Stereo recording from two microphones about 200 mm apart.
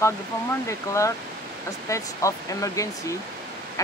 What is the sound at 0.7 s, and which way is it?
Speech, 15° left (ahead or behind).